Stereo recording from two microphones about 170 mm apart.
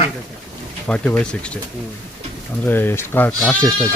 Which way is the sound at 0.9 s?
5° left (ahead or behind).